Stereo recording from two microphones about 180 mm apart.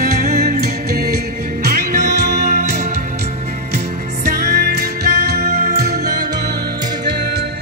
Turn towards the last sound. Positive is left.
turn(degrees=-60)  # may be behind; listen again after turning